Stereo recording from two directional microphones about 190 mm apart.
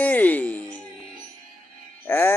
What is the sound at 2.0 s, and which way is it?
Music, 10° left (ahead or behind).